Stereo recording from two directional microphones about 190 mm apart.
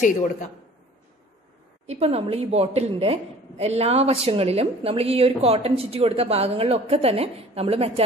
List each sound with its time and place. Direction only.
0.0 s speech: 40° left (ahead or behind)
1.9 s a woman's voice: 30° right (ahead or behind)